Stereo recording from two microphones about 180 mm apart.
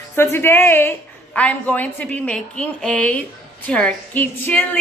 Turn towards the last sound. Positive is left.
turn(degrees=10)  # may be behind; listen again after turning